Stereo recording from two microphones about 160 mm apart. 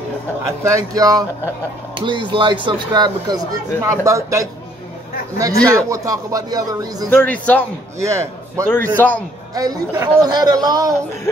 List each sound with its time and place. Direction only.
0.7 s speech: 20° right (ahead or behind)
7.1 s a man's voice: 10° left (ahead or behind)
8.0 s speech: 20° right (ahead or behind)
8.6 s a man's voice: 10° left (ahead or behind)
9.5 s speech: 20° right (ahead or behind)